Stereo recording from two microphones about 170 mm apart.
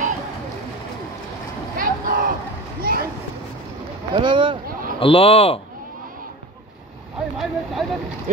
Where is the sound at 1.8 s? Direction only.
55° right (ahead or behind).